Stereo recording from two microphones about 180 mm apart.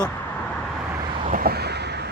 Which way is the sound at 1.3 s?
60° right (ahead or behind).